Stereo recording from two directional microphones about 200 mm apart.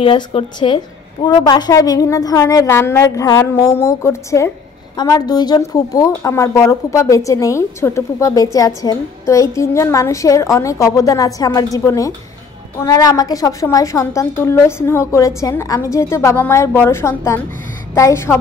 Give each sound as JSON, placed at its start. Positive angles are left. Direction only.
{"t": 0.0, "sound": "a woman's voice", "side_deg": 25}